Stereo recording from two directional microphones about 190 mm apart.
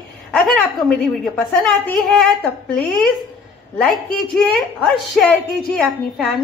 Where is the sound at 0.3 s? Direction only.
5° left (ahead or behind).